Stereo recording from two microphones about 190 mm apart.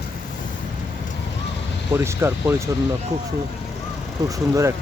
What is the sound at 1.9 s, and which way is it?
Speech, 15° right (ahead or behind).